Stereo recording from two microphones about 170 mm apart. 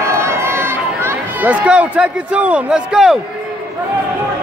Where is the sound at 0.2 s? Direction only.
15° right (ahead or behind).